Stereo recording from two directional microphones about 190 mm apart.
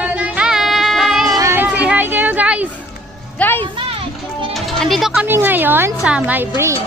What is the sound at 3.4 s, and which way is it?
Music, 10° left (ahead or behind).